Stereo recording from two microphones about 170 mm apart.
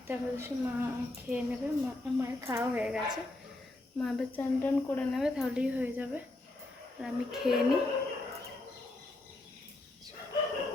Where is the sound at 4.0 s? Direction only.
5° left (ahead or behind).